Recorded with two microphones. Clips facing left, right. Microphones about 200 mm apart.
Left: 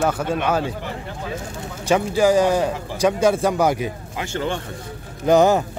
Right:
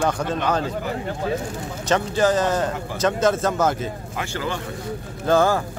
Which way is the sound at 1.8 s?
10° left (ahead or behind).